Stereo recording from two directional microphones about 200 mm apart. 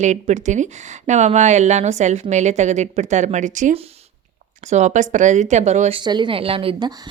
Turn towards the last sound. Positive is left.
turn(degrees=-25)  # may be behind; listen again after turning